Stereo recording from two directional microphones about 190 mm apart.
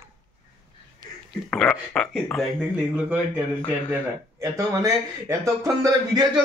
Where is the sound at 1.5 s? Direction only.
5° left (ahead or behind).